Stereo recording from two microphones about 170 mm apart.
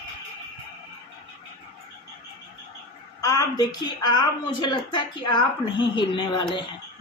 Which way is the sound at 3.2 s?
20° left (ahead or behind).